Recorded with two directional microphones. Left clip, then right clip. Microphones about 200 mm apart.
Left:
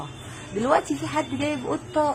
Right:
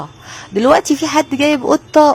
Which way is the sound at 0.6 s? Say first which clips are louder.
Right 11 dB; 50° right (ahead or behind).